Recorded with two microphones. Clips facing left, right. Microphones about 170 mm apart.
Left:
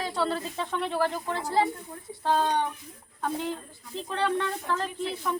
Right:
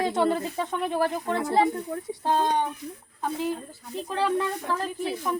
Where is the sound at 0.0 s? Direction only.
20° right (ahead or behind).